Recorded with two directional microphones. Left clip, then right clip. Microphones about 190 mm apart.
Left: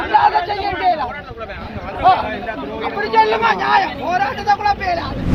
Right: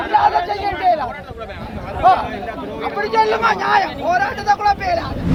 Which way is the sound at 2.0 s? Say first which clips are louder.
Even; 20° right (ahead or behind).